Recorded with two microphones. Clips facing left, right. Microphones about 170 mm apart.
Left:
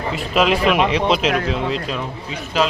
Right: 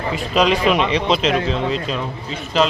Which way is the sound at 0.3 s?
5° left (ahead or behind).